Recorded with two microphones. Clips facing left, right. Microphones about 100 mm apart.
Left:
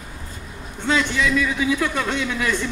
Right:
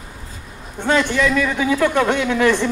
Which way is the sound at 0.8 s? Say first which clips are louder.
Right 4 dB; 55° right (ahead or behind).